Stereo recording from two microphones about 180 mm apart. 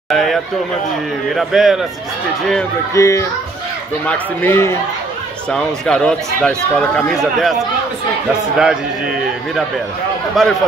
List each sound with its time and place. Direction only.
0.1 s a man's voice: centre (ahead or behind)
2.9 s a man's voice: 15° left (ahead or behind); by 10.5 s centre (ahead or behind)